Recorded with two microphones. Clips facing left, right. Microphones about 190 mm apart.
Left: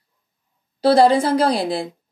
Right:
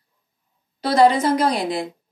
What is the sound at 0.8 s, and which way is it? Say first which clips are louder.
A woman's voice: left 2 dB; 30° left (ahead or behind).